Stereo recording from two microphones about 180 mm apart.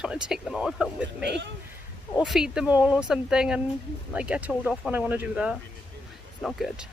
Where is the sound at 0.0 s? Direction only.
5° right (ahead or behind).